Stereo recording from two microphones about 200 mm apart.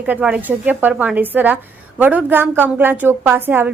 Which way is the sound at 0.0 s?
5° right (ahead or behind).